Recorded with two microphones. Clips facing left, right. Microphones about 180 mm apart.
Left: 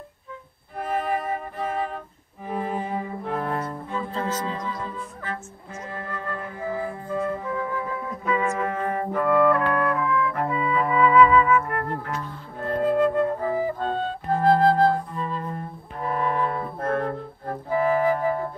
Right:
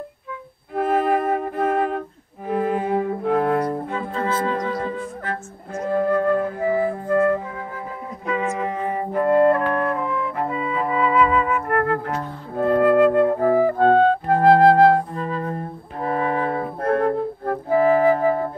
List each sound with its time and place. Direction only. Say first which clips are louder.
0.7 s music: right 7 dB; 60° right (ahead or behind)
2.5 s cello: right 7 dB; 70° right (ahead or behind)
4.5 s music: right 7 dB; 60° right (ahead or behind)
8.5 s music: right 1 dB; 15° right (ahead or behind)
9.5 s music: right 2 dB; 25° right (ahead or behind)
11.6 s flute: right 8 dB; 65° right (ahead or behind)
16.5 s music: right 5 dB; 60° right (ahead or behind)
16.9 s flute: right 9 dB; 55° right (ahead or behind)